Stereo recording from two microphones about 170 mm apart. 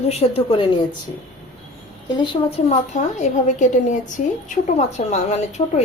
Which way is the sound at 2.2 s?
30° left (ahead or behind).